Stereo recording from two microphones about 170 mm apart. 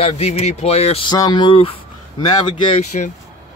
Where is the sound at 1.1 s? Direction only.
25° left (ahead or behind).